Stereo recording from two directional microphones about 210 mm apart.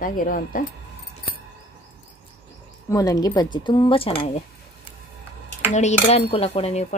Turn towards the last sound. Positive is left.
turn(degrees=30)  # may be behind; listen again after turning